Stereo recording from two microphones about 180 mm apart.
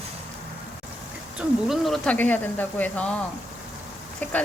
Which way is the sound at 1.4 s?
Centre (ahead or behind).